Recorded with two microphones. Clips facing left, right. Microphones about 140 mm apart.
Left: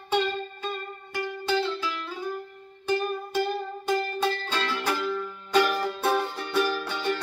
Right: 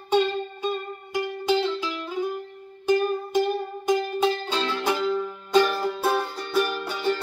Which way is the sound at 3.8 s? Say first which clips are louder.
Right 4 dB; 15° right (ahead or behind).